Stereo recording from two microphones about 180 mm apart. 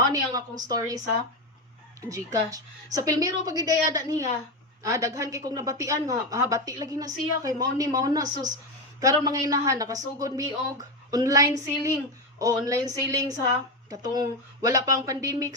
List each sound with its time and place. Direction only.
0.1 s a woman's voice: 20° right (ahead or behind)